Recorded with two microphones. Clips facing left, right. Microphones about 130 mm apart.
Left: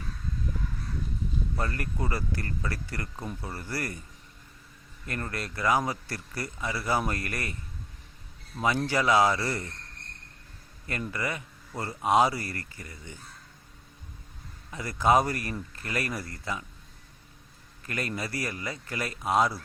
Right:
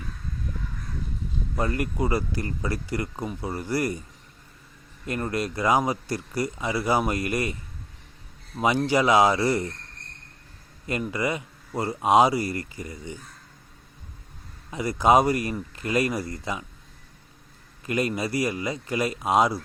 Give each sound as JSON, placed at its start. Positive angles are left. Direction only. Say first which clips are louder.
{"t": 1.5, "sound": "speech", "louder": "right 9 dB", "side_deg": -20}
{"t": 5.0, "sound": "speech", "louder": "right 7 dB", "side_deg": -20}
{"t": 8.5, "sound": "speech", "louder": "right 5 dB", "side_deg": -15}
{"t": 10.8, "sound": "speech", "louder": "right 6 dB", "side_deg": -20}
{"t": 14.7, "sound": "speech", "louder": "right 4 dB", "side_deg": -15}
{"t": 17.8, "sound": "speech", "louder": "right 7 dB", "side_deg": -20}